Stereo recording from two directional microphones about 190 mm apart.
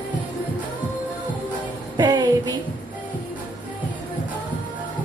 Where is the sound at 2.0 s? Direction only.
20° right (ahead or behind).